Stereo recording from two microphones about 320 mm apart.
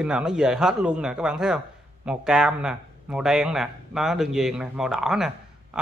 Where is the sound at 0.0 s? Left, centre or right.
Centre.